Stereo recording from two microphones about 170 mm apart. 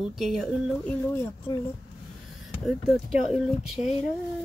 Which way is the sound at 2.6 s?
Centre (ahead or behind).